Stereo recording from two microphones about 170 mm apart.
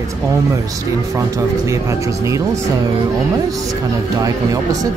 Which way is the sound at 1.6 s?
15° right (ahead or behind).